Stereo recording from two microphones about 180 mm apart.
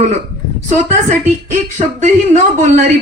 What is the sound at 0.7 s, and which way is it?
A woman's voice, 40° right (ahead or behind).